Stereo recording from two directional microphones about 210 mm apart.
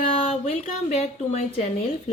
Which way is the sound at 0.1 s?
30° left (ahead or behind).